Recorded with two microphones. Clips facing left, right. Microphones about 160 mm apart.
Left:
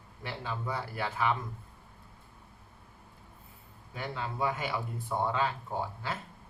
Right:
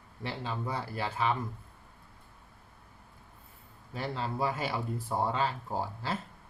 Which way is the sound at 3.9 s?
30° right (ahead or behind).